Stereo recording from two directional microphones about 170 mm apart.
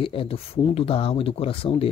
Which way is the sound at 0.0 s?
30° left (ahead or behind).